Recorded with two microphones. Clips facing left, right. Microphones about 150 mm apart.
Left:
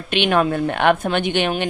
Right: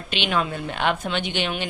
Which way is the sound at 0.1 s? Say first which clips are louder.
Left 7 dB; 55° left (ahead or behind).